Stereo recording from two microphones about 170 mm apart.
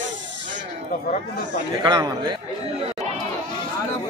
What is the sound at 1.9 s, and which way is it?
Speech, 25° right (ahead or behind).